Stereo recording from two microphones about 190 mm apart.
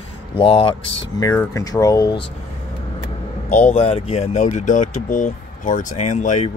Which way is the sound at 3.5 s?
40° left (ahead or behind).